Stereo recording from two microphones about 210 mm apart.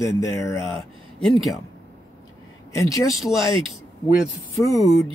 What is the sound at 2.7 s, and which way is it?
Speech, 15° left (ahead or behind).